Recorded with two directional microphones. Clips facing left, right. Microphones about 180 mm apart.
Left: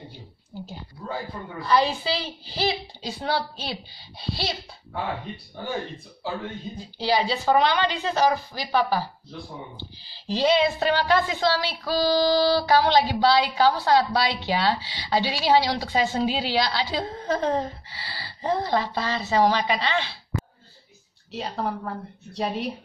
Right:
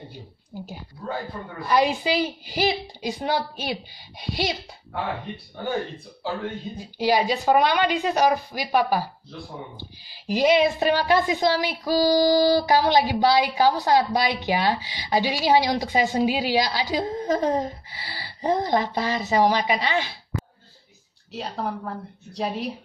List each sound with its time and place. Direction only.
0.5 s speech: 15° right (ahead or behind)
6.8 s speech: 15° right (ahead or behind)
21.3 s speech: centre (ahead or behind)